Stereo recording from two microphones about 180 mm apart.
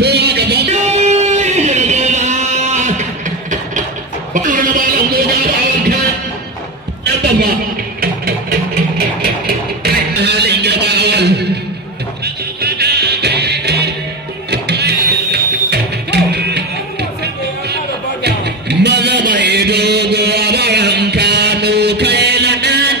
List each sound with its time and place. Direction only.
0.0 s music: 65° right (ahead or behind)
0.7 s music: 35° right (ahead or behind)
4.3 s a sound: 45° right (ahead or behind)
8.0 s a sound: 60° right (ahead or behind)
12.5 s music: 65° right (ahead or behind)
18.2 s music: 65° right (ahead or behind)